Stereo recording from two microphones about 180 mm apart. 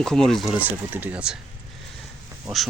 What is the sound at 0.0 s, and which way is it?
Speech, 5° left (ahead or behind).